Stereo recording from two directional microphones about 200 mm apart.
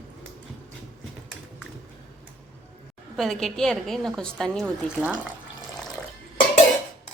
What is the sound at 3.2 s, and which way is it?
A woman's voice, centre (ahead or behind).